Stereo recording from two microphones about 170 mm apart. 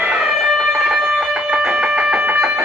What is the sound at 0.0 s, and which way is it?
Music, 5° right (ahead or behind).